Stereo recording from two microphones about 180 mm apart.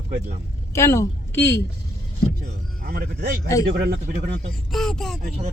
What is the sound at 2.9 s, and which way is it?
A man's voice, 55° right (ahead or behind).